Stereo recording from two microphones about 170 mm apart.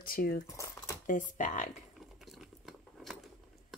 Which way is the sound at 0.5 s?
15° left (ahead or behind).